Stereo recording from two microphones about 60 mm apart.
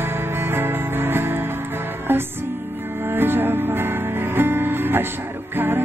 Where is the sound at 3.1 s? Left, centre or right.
Right.